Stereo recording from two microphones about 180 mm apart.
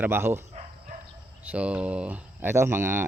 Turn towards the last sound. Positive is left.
turn(degrees=-15)  # may be behind; listen again after turning